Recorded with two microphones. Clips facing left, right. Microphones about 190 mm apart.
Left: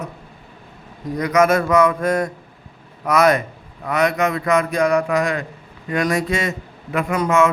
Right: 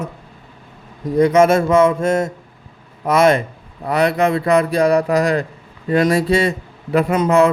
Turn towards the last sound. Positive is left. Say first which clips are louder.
# right 3 dB
turn(degrees=-35)  # may be behind; listen again after turning